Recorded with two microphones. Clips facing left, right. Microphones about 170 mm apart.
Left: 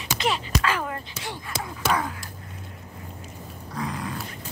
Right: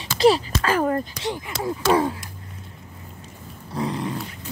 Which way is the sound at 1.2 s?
25° right (ahead or behind).